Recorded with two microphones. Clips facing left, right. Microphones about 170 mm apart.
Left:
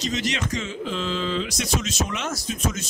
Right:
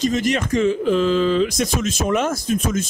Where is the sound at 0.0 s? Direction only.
50° right (ahead or behind).